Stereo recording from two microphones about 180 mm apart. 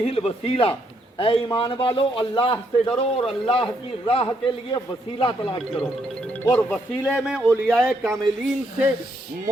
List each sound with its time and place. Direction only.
0.0 s a man's voice: 35° left (ahead or behind)
5.8 s speech: 10° left (ahead or behind)